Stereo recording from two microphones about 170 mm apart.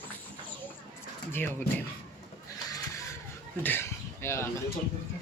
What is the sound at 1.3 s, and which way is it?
Speech, 15° left (ahead or behind).